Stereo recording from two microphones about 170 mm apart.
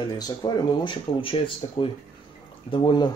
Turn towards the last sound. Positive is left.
turn(degrees=25)  # may be behind; listen again after turning